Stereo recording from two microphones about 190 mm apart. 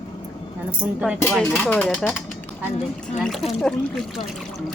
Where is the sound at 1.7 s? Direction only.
5° left (ahead or behind).